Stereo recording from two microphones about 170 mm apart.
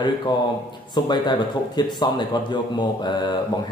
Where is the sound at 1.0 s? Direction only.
25° left (ahead or behind).